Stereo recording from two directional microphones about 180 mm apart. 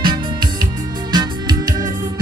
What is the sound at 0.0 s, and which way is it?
Music, 25° right (ahead or behind).